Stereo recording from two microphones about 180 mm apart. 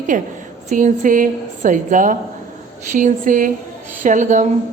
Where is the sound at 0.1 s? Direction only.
45° right (ahead or behind).